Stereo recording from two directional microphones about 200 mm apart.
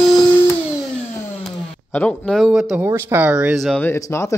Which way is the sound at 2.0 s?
5° left (ahead or behind).